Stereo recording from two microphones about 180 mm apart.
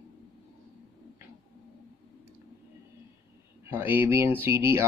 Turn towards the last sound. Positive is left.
turn(degrees=-15)  # may be behind; listen again after turning